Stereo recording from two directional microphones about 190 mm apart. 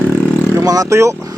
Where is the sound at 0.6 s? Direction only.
20° right (ahead or behind).